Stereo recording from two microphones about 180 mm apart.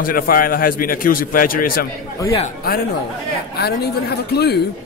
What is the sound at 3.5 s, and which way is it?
A woman's voice, 65° left (ahead or behind).